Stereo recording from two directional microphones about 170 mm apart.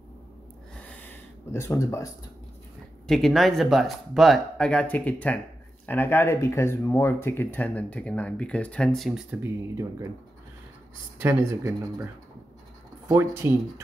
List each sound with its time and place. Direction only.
0.7 s a sound: 10° left (ahead or behind)
3.1 s speech: centre (ahead or behind)
9.4 s speech: 20° right (ahead or behind)
11.1 s speech: 10° right (ahead or behind)
13.1 s speech: 15° right (ahead or behind)